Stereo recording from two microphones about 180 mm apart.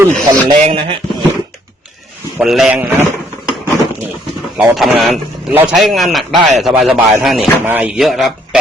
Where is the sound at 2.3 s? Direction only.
5° right (ahead or behind).